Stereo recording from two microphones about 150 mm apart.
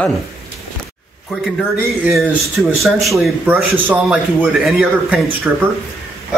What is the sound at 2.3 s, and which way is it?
A man's voice, 10° right (ahead or behind).